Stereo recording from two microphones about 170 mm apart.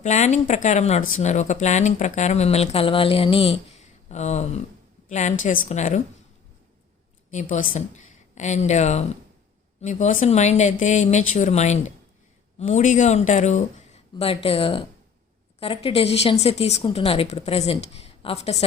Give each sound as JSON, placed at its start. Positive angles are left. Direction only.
{"t": 0.0, "sound": "speech", "side_deg": 45}
{"t": 7.3, "sound": "a woman's voice", "side_deg": 45}